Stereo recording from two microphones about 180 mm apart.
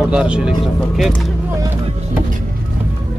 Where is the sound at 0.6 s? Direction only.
Centre (ahead or behind).